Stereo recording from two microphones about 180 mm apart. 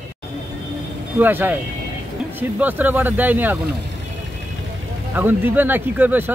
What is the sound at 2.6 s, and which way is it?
Speech, 10° right (ahead or behind).